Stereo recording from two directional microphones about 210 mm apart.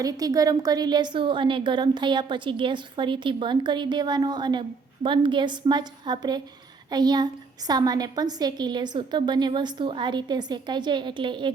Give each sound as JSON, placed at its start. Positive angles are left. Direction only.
{"t": 0.0, "sound": "a woman's voice", "side_deg": -15}